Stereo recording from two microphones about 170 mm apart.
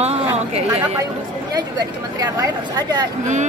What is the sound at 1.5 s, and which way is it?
Speech, 20° right (ahead or behind).